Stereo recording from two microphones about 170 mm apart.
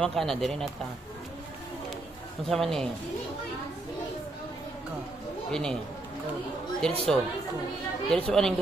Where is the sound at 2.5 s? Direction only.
Centre (ahead or behind).